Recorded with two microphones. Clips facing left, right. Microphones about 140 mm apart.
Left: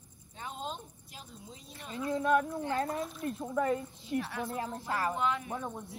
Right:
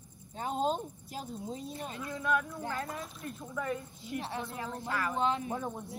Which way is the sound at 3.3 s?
30° left (ahead or behind).